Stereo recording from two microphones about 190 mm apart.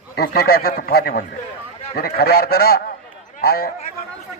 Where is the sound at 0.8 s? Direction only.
55° left (ahead or behind).